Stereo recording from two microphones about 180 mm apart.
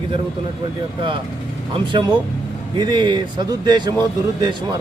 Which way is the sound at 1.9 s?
25° right (ahead or behind).